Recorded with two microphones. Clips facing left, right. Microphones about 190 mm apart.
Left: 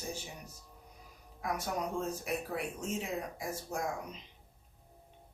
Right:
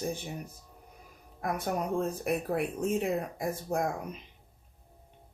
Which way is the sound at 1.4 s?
55° right (ahead or behind).